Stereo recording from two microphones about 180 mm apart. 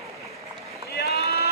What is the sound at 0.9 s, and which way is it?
Vehicle, 60° left (ahead or behind).